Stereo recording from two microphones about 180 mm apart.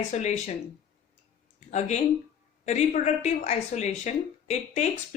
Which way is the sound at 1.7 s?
40° left (ahead or behind).